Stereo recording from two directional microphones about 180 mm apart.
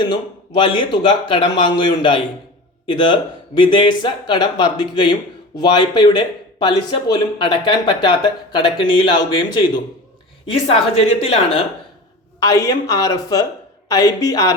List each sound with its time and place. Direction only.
0.0 s speech: 25° left (ahead or behind)
10.5 s a woman's voice: 30° left (ahead or behind)
12.4 s speech: 20° left (ahead or behind)